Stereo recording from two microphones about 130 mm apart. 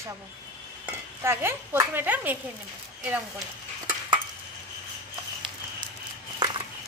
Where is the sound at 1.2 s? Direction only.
20° right (ahead or behind).